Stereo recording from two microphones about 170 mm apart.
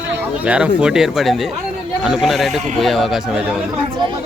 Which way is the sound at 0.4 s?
5° right (ahead or behind).